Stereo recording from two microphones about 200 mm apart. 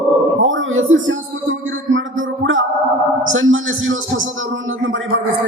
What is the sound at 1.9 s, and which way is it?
Music, 75° right (ahead or behind).